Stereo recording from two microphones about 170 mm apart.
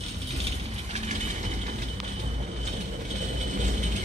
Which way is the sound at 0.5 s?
40° right (ahead or behind).